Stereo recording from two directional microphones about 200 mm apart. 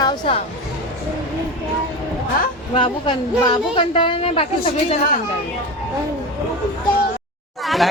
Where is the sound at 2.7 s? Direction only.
25° left (ahead or behind).